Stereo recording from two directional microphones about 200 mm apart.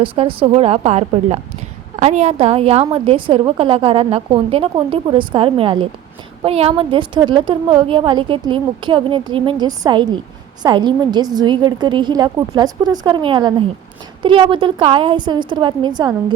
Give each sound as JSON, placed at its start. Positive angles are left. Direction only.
{"t": 0.0, "sound": "a woman's voice", "side_deg": -25}